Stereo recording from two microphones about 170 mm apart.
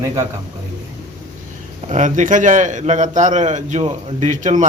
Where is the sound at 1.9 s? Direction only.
45° right (ahead or behind).